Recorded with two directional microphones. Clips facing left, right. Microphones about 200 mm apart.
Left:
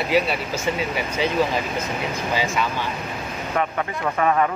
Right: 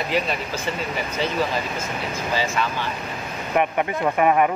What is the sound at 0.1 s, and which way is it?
Speech, 10° left (ahead or behind).